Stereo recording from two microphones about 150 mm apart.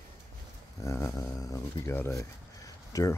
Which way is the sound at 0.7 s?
20° left (ahead or behind).